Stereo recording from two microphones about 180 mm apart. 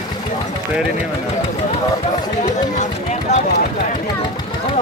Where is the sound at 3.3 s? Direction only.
40° left (ahead or behind).